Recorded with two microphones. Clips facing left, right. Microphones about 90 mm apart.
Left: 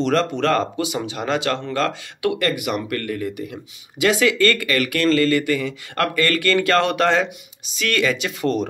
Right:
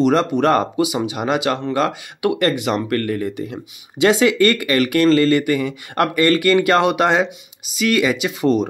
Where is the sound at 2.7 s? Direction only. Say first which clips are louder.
Right 4 dB; 40° right (ahead or behind).